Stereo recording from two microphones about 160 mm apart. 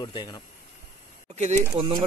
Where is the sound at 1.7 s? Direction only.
35° right (ahead or behind).